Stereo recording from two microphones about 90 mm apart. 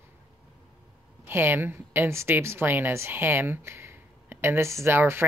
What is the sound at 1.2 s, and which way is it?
Speech, 25° right (ahead or behind).